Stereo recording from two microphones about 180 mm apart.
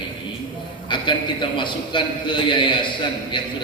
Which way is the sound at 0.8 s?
25° left (ahead or behind).